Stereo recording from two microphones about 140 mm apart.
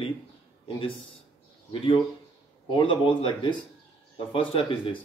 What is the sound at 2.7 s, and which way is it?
Speech, 35° left (ahead or behind).